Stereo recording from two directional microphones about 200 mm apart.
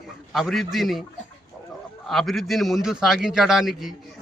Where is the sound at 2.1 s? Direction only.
Centre (ahead or behind).